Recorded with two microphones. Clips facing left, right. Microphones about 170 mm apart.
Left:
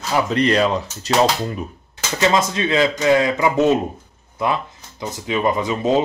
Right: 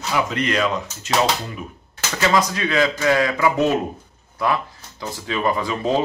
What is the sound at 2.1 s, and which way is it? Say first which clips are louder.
Speech: left 2 dB; 25° left (ahead or behind).